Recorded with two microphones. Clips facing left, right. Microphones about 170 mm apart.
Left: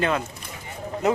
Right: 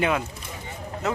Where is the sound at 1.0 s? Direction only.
20° left (ahead or behind).